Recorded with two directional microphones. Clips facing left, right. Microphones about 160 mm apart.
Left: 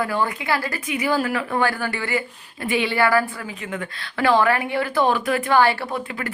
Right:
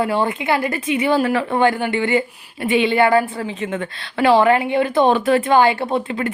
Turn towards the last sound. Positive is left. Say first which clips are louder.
# right 7 dB
turn(degrees=-25)  # may be behind; listen again after turning